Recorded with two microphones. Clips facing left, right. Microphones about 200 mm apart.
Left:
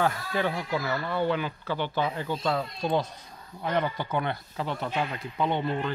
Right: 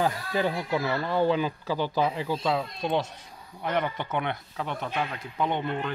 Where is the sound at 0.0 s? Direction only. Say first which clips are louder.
Right 1 dB; 20° right (ahead or behind).